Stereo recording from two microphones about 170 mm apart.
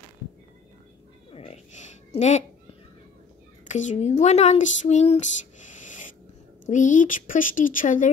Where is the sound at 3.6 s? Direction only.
45° left (ahead or behind).